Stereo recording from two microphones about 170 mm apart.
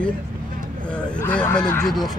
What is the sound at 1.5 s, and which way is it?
Speech, 20° left (ahead or behind).